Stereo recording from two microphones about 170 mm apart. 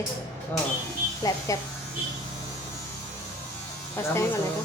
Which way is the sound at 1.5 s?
20° left (ahead or behind).